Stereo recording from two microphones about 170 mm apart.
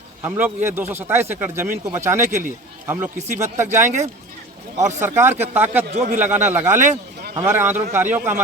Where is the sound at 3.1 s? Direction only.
45° right (ahead or behind).